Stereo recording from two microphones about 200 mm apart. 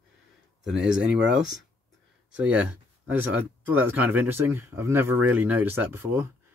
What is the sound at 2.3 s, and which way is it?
Speech, 5° right (ahead or behind).